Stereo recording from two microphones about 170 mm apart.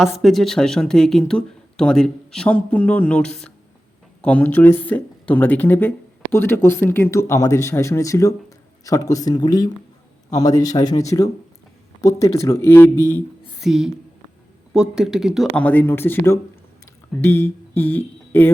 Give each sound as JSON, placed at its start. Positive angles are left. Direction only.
{"t": 0.0, "sound": "a man's voice", "side_deg": 0}
{"t": 13.6, "sound": "speech", "side_deg": 0}
{"t": 15.6, "sound": "speech", "side_deg": 10}